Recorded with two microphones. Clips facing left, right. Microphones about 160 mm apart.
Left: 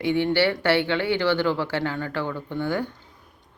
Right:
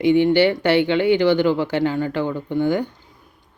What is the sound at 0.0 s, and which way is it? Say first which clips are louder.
Speech: right 6 dB; 15° right (ahead or behind).